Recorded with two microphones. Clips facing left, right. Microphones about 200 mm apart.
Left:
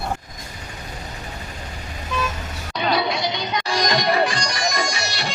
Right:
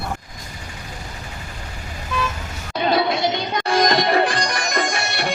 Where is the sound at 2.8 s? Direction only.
50° right (ahead or behind).